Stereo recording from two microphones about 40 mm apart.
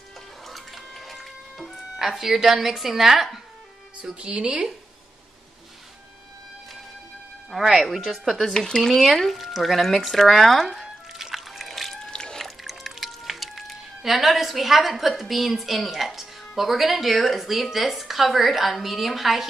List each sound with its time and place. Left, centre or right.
0.5 s music: centre
2.0 s speech: centre
4.0 s a woman's voice: right
7.5 s speech: centre
8.5 s speech: centre
8.9 s speech: centre
11.1 s a sound: centre
12.0 s rowboat: centre
12.4 s speech: centre